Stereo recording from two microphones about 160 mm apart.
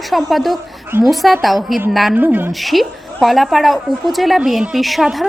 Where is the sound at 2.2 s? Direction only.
10° right (ahead or behind).